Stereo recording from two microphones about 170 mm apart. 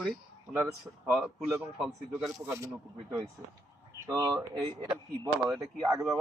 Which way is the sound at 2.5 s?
15° right (ahead or behind).